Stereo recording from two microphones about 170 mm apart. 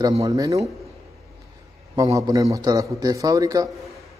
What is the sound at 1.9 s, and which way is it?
A man's voice, 20° right (ahead or behind).